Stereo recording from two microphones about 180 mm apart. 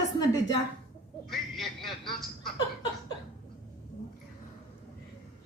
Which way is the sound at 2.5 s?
25° left (ahead or behind).